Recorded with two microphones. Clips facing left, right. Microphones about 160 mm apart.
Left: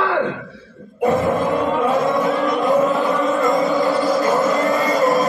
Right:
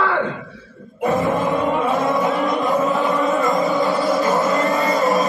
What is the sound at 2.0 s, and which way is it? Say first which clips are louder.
Music: left 1 dB; centre (ahead or behind).